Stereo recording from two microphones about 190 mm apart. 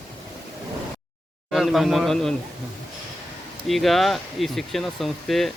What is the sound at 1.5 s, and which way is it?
Speech, centre (ahead or behind).